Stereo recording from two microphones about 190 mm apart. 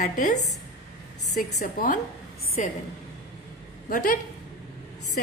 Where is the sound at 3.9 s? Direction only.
45° left (ahead or behind).